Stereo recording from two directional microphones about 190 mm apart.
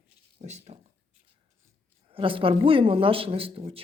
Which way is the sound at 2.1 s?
30° right (ahead or behind).